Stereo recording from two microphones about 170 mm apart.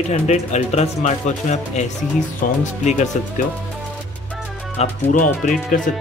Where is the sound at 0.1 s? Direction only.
40° left (ahead or behind).